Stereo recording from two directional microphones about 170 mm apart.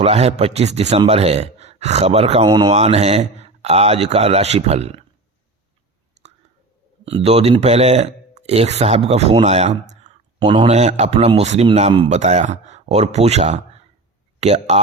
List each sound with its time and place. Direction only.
0.0 s speech: 35° right (ahead or behind)
2.5 s speech: 25° right (ahead or behind)
2.7 s speech: 40° right (ahead or behind)
7.0 s speech: 35° right (ahead or behind)